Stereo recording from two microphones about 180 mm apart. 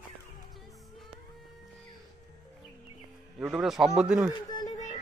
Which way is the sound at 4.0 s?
5° right (ahead or behind).